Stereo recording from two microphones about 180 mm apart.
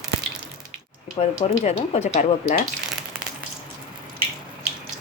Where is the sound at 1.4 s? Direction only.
40° left (ahead or behind).